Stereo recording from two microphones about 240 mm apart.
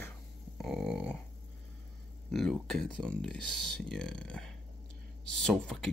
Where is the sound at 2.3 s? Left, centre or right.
Centre.